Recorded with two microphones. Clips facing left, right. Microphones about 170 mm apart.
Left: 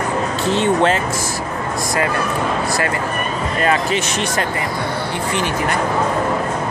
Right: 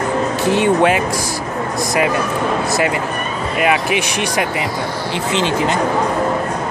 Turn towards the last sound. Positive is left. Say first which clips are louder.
# right 3 dB
turn(degrees=-20)  # may be behind; listen again after turning